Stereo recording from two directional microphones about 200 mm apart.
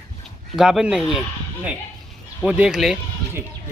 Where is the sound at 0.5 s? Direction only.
5° right (ahead or behind).